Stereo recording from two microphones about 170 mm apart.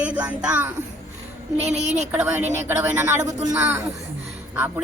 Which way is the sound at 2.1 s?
10° right (ahead or behind).